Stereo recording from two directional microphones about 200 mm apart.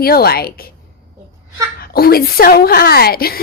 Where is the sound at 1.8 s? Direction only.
50° left (ahead or behind).